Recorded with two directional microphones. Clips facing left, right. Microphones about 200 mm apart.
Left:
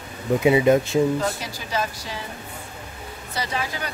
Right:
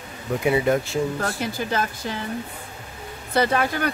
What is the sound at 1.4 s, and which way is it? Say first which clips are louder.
Speech: right 3 dB; 55° right (ahead or behind).